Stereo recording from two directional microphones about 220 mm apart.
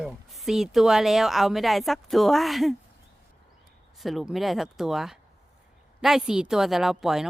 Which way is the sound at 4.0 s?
Centre (ahead or behind).